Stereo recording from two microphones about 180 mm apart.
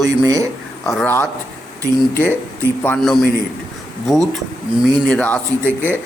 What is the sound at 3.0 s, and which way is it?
Speech, centre (ahead or behind).